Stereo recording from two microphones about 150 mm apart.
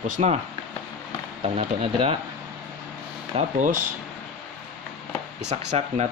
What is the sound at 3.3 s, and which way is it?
Speech, 45° right (ahead or behind).